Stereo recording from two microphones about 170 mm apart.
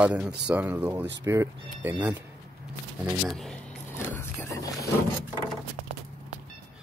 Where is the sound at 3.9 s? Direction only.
15° left (ahead or behind).